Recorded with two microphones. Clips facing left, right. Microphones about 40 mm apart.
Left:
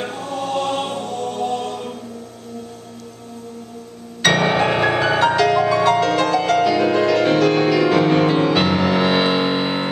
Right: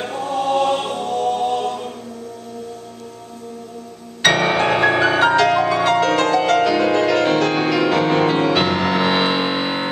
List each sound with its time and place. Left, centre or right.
0.0 s choir: centre
1.2 s music: right
1.6 s choir: centre
4.2 s music: centre